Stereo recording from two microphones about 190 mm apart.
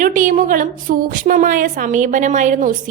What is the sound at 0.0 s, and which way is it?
A woman's voice, 45° right (ahead or behind).